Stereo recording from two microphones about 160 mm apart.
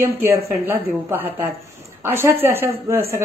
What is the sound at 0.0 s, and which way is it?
A woman's voice, 15° right (ahead or behind).